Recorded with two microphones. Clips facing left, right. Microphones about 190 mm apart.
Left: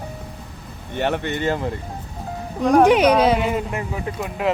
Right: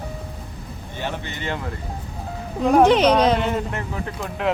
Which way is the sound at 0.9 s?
60° left (ahead or behind).